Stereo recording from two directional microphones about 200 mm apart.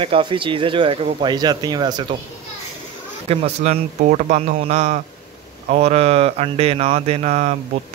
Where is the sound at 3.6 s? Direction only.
40° right (ahead or behind).